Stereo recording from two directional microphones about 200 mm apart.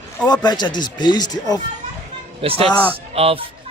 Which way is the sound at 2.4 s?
30° right (ahead or behind).